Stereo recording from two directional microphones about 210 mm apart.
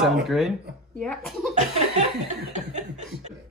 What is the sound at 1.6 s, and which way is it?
Laughter, 35° right (ahead or behind).